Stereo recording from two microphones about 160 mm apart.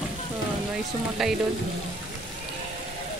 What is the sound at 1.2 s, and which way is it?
Speech, centre (ahead or behind).